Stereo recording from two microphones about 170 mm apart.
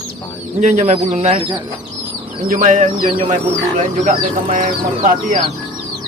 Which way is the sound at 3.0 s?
30° right (ahead or behind).